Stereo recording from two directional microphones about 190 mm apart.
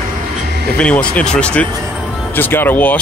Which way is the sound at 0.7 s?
5° left (ahead or behind).